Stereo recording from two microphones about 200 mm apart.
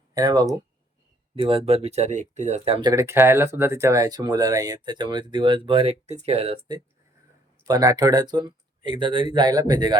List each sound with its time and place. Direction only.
0.1 s speech: 20° right (ahead or behind)
2.9 s speech: 15° right (ahead or behind)